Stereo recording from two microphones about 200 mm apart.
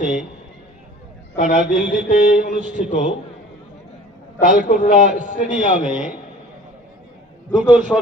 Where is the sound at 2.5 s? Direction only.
40° right (ahead or behind).